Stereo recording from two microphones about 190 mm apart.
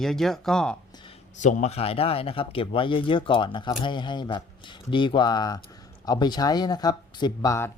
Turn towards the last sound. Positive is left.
turn(degrees=15)  # may be behind; listen again after turning